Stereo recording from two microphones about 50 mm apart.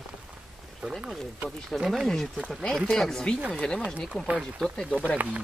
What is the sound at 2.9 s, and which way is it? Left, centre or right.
Speech, centre.